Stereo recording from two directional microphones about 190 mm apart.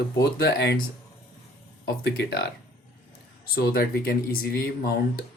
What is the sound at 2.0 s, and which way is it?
Speech, 60° left (ahead or behind).